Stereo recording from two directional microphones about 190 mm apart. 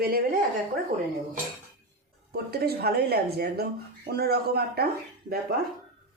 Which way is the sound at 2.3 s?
55° right (ahead or behind).